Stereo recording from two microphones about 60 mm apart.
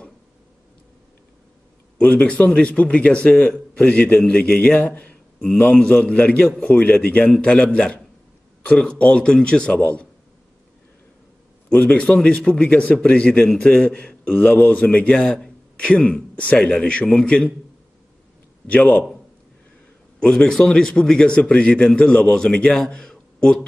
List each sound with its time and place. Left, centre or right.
2.0 s a man's voice: left
11.7 s a man's voice: left
15.1 s a man's voice: centre
18.7 s a man's voice: left
20.2 s a man's voice: centre